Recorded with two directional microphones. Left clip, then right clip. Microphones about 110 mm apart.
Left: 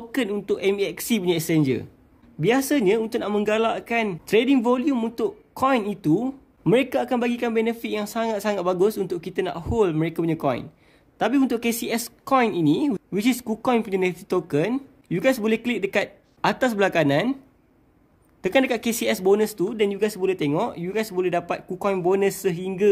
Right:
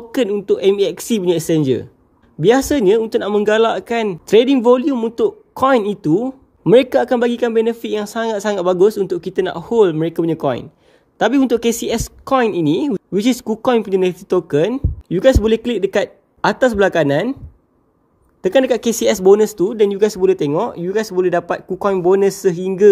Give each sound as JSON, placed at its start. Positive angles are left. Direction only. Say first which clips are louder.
{"t": 0.1, "sound": "speech", "louder": "right 9 dB", "side_deg": -40}
{"t": 2.4, "sound": "speech", "louder": "right 8 dB", "side_deg": -45}
{"t": 5.7, "sound": "speech", "louder": "right 8 dB", "side_deg": -50}
{"t": 5.9, "sound": "speech", "louder": "right 6 dB", "side_deg": -30}
{"t": 6.7, "sound": "speech", "louder": "right 9 dB", "side_deg": -55}
{"t": 11.1, "sound": "speech", "louder": "right 7 dB", "side_deg": -50}
{"t": 18.4, "sound": "speech", "louder": "right 7 dB", "side_deg": -30}
{"t": 20.5, "sound": "speech", "louder": "right 7 dB", "side_deg": -30}